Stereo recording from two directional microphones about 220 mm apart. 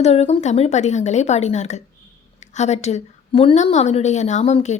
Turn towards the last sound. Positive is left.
turn(degrees=30)  # may be behind; listen again after turning